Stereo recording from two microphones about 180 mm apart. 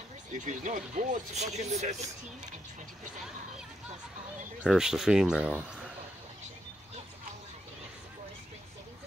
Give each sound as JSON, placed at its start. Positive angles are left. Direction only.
{"t": 0.5, "sound": "speech", "side_deg": -45}
{"t": 4.6, "sound": "speech", "side_deg": 0}